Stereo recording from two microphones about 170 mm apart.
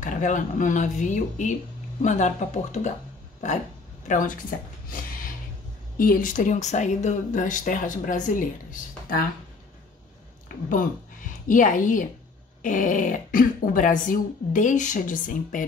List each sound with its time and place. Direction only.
0.0 s speech: 50° left (ahead or behind)
4.1 s speech: 50° left (ahead or behind)
5.9 s speech: 55° left (ahead or behind)
10.5 s a sound: 55° left (ahead or behind)
11.4 s speech: 50° left (ahead or behind)